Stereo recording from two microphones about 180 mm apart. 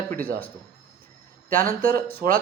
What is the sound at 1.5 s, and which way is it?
Speech, 50° right (ahead or behind).